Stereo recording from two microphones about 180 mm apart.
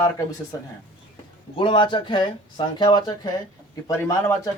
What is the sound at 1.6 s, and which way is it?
Speech, 30° left (ahead or behind).